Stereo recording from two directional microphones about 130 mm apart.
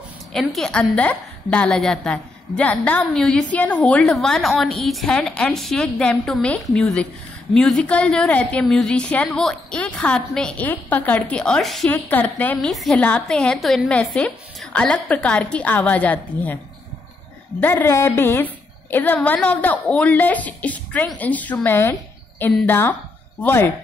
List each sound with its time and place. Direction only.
0.3 s a woman's voice: 5° left (ahead or behind)
11.9 s a woman's voice: 15° left (ahead or behind)
12.7 s a woman's voice: centre (ahead or behind)
17.6 s a woman's voice: 15° left (ahead or behind)